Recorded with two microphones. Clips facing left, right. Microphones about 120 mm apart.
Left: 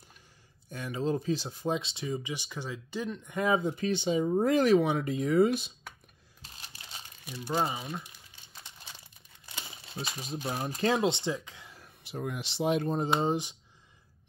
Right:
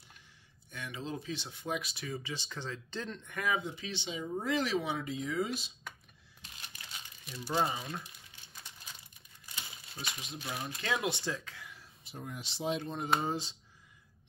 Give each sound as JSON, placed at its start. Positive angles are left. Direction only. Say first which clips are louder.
{"t": 0.7, "sound": "speech", "louder": "left 9 dB", "side_deg": 40}
{"t": 1.8, "sound": "speech", "louder": "left 6 dB", "side_deg": 25}
{"t": 3.3, "sound": "speech", "louder": "left 6 dB", "side_deg": 30}
{"t": 3.6, "sound": "speech", "louder": "left 11 dB", "side_deg": 45}
{"t": 6.4, "sound": "a sound", "louder": "left 1 dB", "side_deg": 35}
{"t": 7.2, "sound": "speech", "louder": "left 3 dB", "side_deg": 0}
{"t": 9.8, "sound": "speech", "louder": "left 6 dB", "side_deg": 30}
{"t": 11.8, "sound": "speech", "louder": "left 11 dB", "side_deg": 75}
{"t": 13.2, "sound": "speech", "louder": "left 6 dB", "side_deg": 20}